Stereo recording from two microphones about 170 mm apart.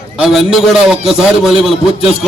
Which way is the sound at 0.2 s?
Centre (ahead or behind).